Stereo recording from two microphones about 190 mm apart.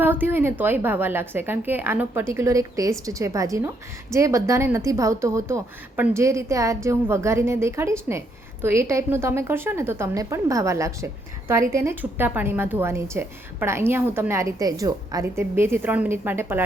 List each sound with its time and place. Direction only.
0.0 s a woman's voice: 10° right (ahead or behind)